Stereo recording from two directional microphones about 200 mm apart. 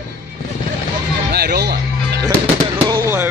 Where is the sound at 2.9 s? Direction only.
15° right (ahead or behind).